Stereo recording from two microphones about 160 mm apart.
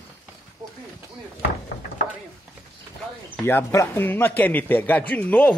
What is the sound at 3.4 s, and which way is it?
Speech, 15° left (ahead or behind).